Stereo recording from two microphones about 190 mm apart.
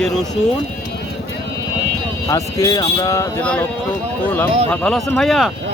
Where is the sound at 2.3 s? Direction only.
20° left (ahead or behind).